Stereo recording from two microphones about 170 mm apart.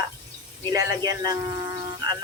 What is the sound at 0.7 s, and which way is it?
Speech, 20° right (ahead or behind).